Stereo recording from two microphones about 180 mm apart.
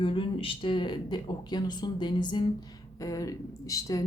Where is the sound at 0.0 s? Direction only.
30° left (ahead or behind).